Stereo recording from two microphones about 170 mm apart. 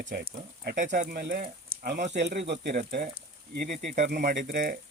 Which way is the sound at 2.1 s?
85° right.